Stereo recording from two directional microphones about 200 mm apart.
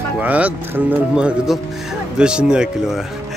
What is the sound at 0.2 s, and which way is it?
Speech, 5° right (ahead or behind).